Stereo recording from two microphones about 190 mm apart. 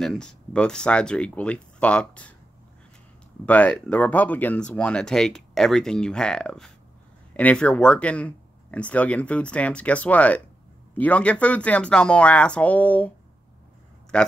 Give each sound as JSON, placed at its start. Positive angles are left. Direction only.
{"t": 0.0, "sound": "speech", "side_deg": 0}
{"t": 3.4, "sound": "speech", "side_deg": 5}
{"t": 14.1, "sound": "speech", "side_deg": 5}